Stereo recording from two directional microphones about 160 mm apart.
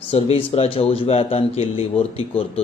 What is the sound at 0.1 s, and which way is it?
A man's voice, 35° left (ahead or behind).